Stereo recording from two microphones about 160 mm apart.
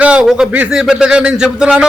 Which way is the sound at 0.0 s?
5° right (ahead or behind).